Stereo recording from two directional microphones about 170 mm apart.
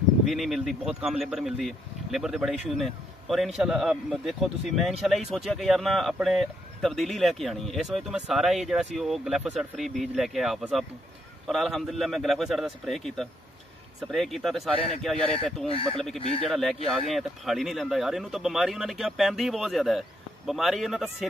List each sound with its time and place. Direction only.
0.2 s speech: centre (ahead or behind)
15.7 s speech: 35° left (ahead or behind)
16.4 s speech: centre (ahead or behind)